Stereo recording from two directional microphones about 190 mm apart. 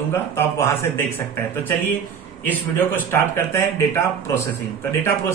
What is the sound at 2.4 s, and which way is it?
Speech, 10° left (ahead or behind).